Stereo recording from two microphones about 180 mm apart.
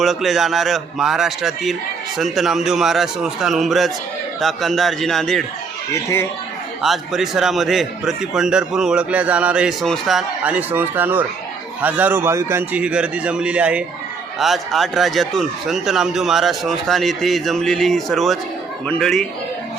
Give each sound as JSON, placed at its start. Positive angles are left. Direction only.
{"t": 0.0, "sound": "a man's voice", "side_deg": 0}
{"t": 5.9, "sound": "speech", "side_deg": 15}
{"t": 6.8, "sound": "a man's voice", "side_deg": 0}